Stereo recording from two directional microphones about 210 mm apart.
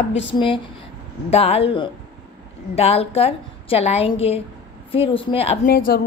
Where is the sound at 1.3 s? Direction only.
30° left (ahead or behind).